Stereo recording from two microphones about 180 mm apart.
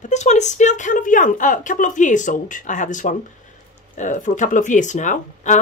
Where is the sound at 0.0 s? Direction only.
40° left (ahead or behind).